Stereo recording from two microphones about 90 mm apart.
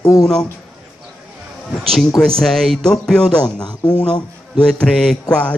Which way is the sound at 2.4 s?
5° left (ahead or behind).